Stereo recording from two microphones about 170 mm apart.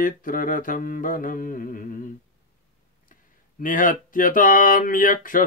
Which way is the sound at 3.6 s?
50° left (ahead or behind).